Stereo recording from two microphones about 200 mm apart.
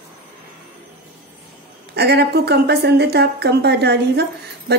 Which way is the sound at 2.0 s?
55° right (ahead or behind).